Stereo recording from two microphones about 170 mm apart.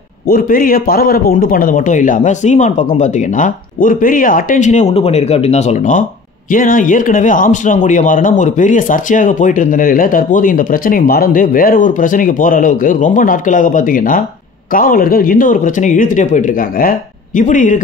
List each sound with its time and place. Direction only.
0.3 s speech: 55° left (ahead or behind)